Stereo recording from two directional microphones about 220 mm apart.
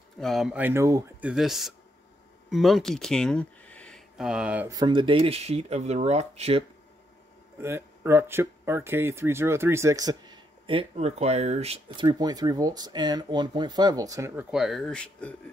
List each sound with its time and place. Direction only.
0.2 s speech: centre (ahead or behind)
1.3 s speech: centre (ahead or behind); by 6.6 s 30° right (ahead or behind)
7.6 s speech: 10° right (ahead or behind); by 15.3 s 5° left (ahead or behind)